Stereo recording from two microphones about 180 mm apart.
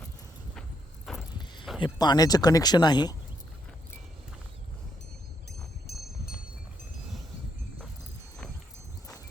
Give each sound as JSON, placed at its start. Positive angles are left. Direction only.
{"t": 1.1, "sound": "vehicle", "side_deg": 0}
{"t": 1.8, "sound": "speech", "side_deg": 25}
{"t": 5.5, "sound": "a sound", "side_deg": 60}